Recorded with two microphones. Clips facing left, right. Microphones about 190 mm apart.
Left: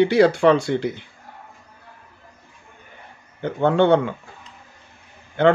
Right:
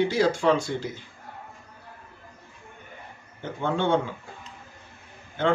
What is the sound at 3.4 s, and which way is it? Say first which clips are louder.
Speech: left 9 dB; 60° left (ahead or behind).